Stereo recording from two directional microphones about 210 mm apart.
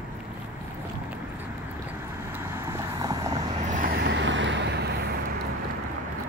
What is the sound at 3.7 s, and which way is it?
Vehicle, 40° right (ahead or behind).